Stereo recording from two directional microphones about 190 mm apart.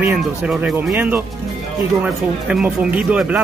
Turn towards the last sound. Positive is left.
turn(degrees=-5)  # may be behind; listen again after turning